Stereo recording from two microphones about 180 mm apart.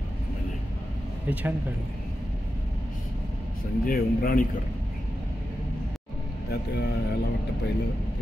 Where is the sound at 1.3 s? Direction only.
10° right (ahead or behind).